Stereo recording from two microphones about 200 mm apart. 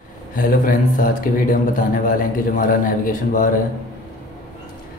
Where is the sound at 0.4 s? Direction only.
45° left (ahead or behind).